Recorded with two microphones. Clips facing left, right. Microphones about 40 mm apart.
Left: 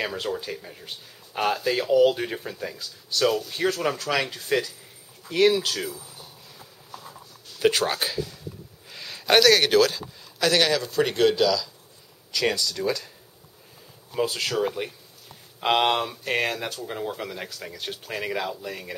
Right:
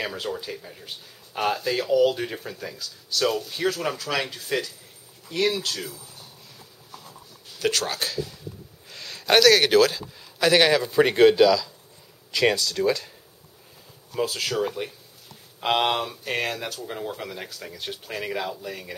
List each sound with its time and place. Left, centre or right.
0.0 s speech: centre
7.5 s speech: centre
14.1 s speech: centre